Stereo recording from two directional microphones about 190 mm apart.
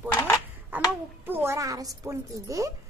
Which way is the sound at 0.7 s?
10° right (ahead or behind).